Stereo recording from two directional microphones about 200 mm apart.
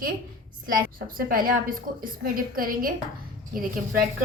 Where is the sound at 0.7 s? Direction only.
45° right (ahead or behind).